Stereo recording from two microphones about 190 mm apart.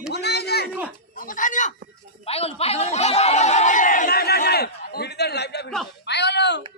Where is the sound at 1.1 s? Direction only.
45° left (ahead or behind).